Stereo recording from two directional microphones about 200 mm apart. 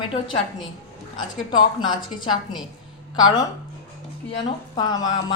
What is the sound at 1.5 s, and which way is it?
Speech, 25° left (ahead or behind).